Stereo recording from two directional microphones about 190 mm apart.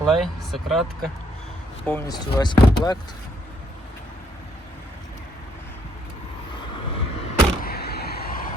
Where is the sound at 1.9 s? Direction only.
10° left (ahead or behind).